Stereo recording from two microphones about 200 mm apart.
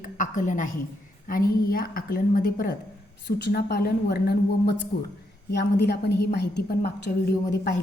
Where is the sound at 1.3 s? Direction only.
45° left (ahead or behind).